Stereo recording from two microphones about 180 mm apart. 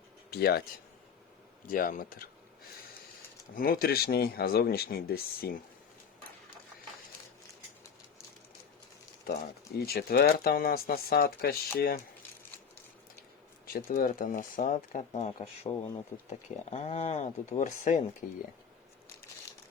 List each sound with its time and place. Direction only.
0.3 s speech: 60° left (ahead or behind)
1.7 s speech: 50° left (ahead or behind)
3.5 s speech: 55° left (ahead or behind)
9.2 s speech: 60° left (ahead or behind)
13.7 s speech: 55° left (ahead or behind)